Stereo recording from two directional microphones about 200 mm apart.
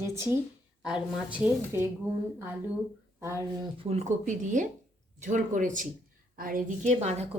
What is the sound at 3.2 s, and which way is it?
Speech, 15° right (ahead or behind).